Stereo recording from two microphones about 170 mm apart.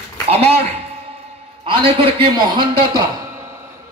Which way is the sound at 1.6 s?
30° right (ahead or behind).